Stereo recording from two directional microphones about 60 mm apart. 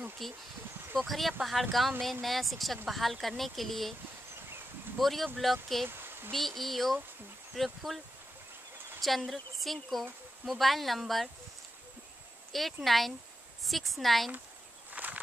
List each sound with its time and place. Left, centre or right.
0.2 s speech: centre
4.9 s speech: centre
5.9 s a sound: right
6.3 s speech: centre
9.0 s speech: centre
12.8 s speech: centre
14.9 s a sound: right